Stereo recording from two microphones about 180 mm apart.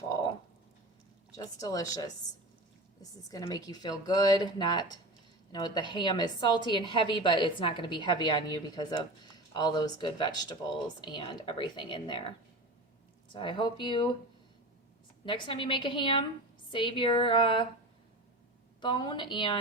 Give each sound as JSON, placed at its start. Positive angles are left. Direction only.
{"t": 1.4, "sound": "a woman's voice", "side_deg": 20}
{"t": 13.3, "sound": "a woman's voice", "side_deg": 25}
{"t": 15.2, "sound": "a woman's voice", "side_deg": 30}
{"t": 18.8, "sound": "a woman's voice", "side_deg": 25}